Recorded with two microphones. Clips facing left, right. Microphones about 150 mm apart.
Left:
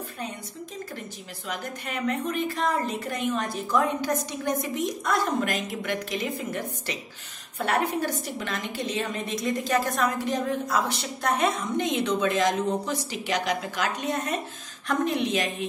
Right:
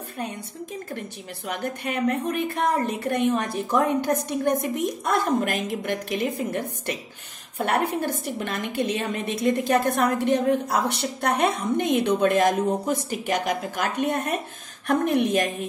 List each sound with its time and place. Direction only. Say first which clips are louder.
1.5 s a woman's voice: right 5 dB; 55° right (ahead or behind)